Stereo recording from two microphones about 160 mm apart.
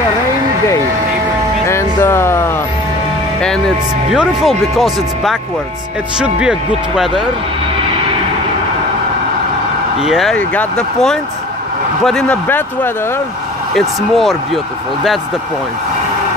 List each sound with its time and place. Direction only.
1.7 s a sound: 15° left (ahead or behind)
3.3 s speech: 5° left (ahead or behind)
9.9 s speech: centre (ahead or behind)
13.7 s speech: centre (ahead or behind)